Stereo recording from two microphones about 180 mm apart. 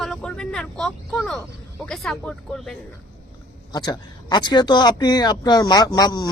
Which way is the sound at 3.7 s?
25° left (ahead or behind).